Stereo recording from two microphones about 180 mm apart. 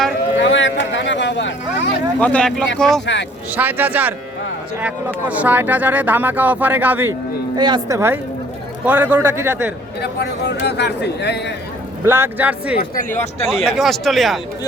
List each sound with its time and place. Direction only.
0.3 s a sound: 90° left
2.1 s speech: 5° left (ahead or behind)
3.5 s speech: 10° right (ahead or behind)
7.5 s speech: 25° right (ahead or behind)
10.0 s a man's voice: 65° left (ahead or behind)
12.0 s speech: 15° right (ahead or behind)
12.8 s speech: 45° left (ahead or behind)
13.5 s speech: centre (ahead or behind)